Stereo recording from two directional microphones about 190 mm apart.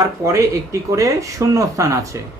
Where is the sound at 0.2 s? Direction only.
15° right (ahead or behind).